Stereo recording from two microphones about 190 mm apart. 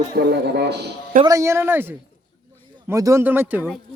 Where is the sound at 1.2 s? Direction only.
15° right (ahead or behind).